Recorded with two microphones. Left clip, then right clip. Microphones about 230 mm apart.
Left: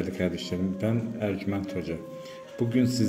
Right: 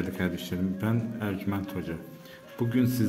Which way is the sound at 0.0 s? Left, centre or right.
Centre.